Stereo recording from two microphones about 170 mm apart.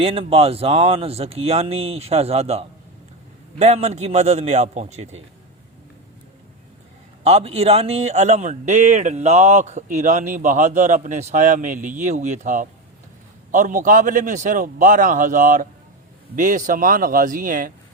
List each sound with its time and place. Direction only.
0.0 s speech: 35° right (ahead or behind)
7.3 s a man's voice: 40° right (ahead or behind); by 17.7 s 55° right (ahead or behind)